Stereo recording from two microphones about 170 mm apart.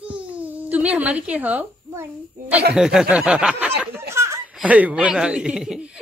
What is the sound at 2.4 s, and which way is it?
Speech, 50° right (ahead or behind).